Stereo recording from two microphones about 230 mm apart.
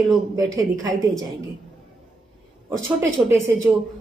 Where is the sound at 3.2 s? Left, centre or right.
Centre.